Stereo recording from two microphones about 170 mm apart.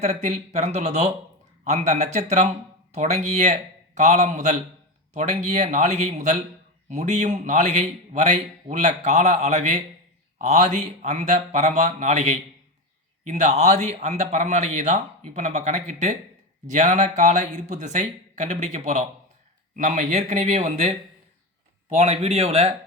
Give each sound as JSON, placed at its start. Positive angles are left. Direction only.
{"t": 0.0, "sound": "speech", "side_deg": -40}